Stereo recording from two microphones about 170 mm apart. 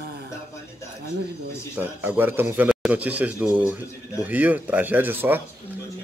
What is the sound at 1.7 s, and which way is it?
A man's voice, 10° right (ahead or behind).